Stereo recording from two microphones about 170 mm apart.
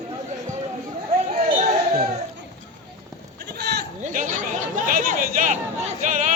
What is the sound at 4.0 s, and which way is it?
Chatter, 50° right (ahead or behind).